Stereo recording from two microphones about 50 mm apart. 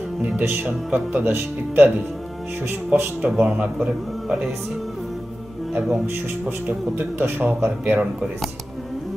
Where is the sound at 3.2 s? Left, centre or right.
Right.